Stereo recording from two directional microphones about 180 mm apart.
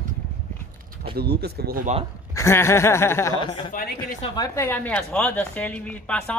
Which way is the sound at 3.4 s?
25° left (ahead or behind).